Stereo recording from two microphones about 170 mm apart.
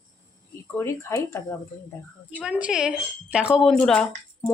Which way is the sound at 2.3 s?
5° right (ahead or behind).